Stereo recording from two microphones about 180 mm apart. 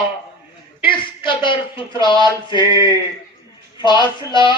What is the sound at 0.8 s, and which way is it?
A man's voice, 25° left (ahead or behind).